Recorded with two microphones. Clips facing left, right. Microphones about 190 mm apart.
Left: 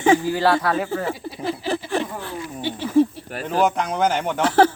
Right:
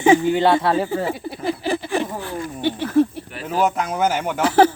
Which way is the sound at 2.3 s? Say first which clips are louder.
Right 4 dB; 55° right (ahead or behind).